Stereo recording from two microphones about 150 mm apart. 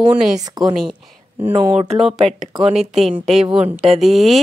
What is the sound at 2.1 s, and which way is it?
Speech, centre (ahead or behind).